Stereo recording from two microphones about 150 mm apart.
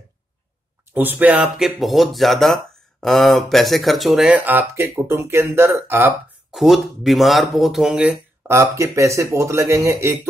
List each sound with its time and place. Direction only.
0.9 s speech: 10° right (ahead or behind)
6.5 s speech: centre (ahead or behind); by 10.1 s 20° right (ahead or behind)